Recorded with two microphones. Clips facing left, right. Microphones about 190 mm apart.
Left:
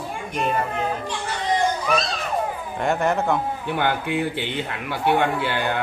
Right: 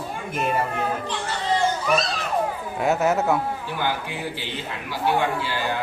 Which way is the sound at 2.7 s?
5° right (ahead or behind).